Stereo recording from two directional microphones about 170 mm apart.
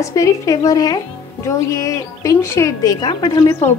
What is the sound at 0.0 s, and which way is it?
Speech, 20° left (ahead or behind).